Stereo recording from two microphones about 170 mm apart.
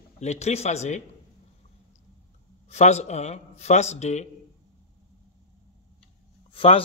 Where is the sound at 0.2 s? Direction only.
40° left (ahead or behind).